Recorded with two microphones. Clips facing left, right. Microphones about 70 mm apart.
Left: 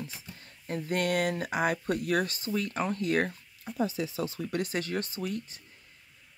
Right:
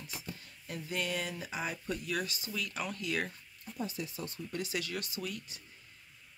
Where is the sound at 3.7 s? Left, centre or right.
Left.